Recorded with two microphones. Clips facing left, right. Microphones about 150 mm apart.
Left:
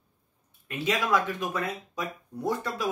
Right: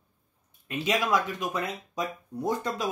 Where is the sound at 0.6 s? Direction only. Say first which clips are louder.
Right 1 dB; 15° right (ahead or behind).